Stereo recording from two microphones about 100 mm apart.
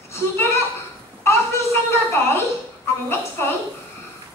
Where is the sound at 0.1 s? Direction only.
25° left (ahead or behind).